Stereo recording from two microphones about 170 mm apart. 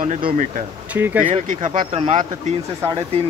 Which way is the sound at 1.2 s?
45° right (ahead or behind).